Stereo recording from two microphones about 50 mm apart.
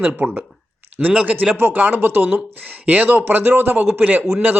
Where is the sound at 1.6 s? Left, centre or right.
Right.